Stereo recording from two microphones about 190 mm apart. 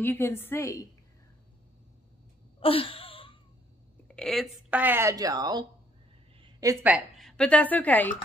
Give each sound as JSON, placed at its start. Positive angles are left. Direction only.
{"t": 0.0, "sound": "a woman's voice", "side_deg": 10}
{"t": 2.6, "sound": "wail", "side_deg": 30}
{"t": 4.1, "sound": "speech", "side_deg": 0}
{"t": 7.2, "sound": "speech", "side_deg": 5}